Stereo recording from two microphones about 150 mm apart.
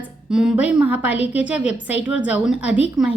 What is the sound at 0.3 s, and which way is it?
A woman's voice, 5° right (ahead or behind).